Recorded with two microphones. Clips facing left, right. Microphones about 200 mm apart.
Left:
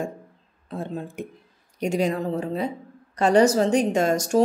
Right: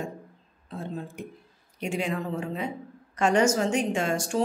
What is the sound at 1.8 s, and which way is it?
A woman's voice, 40° left (ahead or behind).